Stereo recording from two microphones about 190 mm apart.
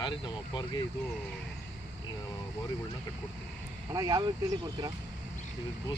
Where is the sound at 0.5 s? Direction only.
20° left (ahead or behind).